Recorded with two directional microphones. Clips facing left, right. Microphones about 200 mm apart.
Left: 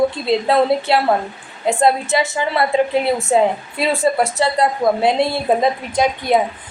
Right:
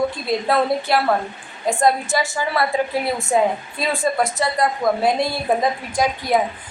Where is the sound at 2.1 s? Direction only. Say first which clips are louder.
Left 3 dB; 25° left (ahead or behind).